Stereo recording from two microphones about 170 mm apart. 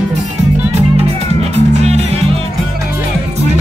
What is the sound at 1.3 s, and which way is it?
Music, 40° right (ahead or behind).